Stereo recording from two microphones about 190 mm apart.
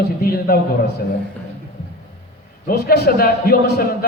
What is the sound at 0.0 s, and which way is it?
Speech, 50° left (ahead or behind).